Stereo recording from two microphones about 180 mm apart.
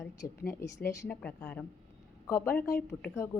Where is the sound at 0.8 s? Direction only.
15° left (ahead or behind).